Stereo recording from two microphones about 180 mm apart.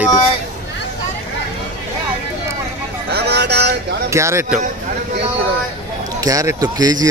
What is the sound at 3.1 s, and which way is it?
Vehicle, 65° right (ahead or behind).